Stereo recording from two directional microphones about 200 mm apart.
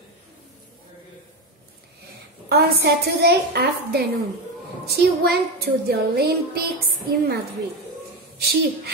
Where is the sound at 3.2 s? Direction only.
55° right (ahead or behind).